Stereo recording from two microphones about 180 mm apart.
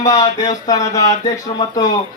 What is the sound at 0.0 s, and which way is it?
A man's voice, 20° left (ahead or behind).